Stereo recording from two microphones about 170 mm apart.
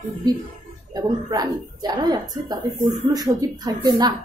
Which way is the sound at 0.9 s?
20° right (ahead or behind).